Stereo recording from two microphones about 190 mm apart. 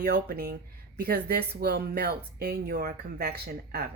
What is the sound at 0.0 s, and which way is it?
A woman's voice, 55° right (ahead or behind).